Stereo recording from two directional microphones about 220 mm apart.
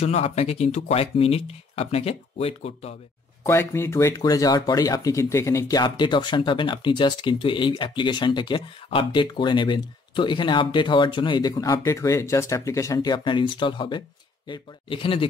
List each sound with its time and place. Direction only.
0.0 s speech: 30° left (ahead or behind)
3.4 s speech: 10° left (ahead or behind)